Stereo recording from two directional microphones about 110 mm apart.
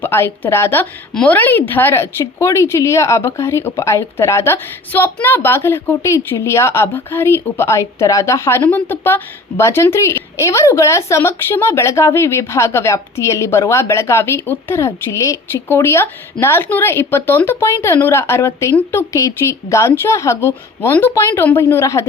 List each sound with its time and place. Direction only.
0.0 s a woman's voice: 20° left (ahead or behind)